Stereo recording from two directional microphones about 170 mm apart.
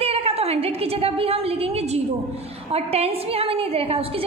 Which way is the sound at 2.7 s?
35° right (ahead or behind).